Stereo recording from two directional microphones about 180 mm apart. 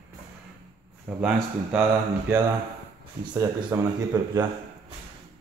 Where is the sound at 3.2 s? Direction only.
25° right (ahead or behind).